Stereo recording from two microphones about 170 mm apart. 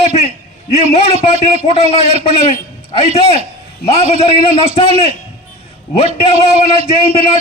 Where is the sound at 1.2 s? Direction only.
35° left (ahead or behind).